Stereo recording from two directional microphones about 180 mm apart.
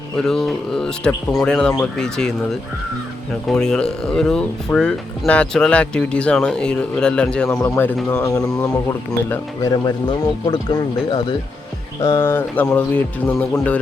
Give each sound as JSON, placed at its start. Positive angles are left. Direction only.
{"t": 0.2, "sound": "speech", "side_deg": 0}
{"t": 12.0, "sound": "speech", "side_deg": 15}